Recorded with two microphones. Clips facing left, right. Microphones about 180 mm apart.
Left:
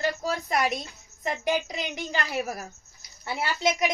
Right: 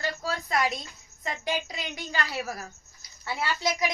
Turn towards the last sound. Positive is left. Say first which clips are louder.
# left 3 dB
turn(degrees=25)  # may be behind; listen again after turning